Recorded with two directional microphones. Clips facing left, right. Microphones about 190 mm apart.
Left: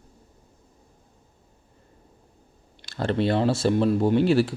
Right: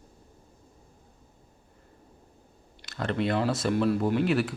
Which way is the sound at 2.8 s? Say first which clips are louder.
Left 4 dB; 30° left (ahead or behind).